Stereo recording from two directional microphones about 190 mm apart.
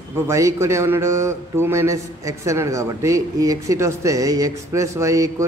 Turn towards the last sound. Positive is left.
turn(degrees=-15)  # may be behind; listen again after turning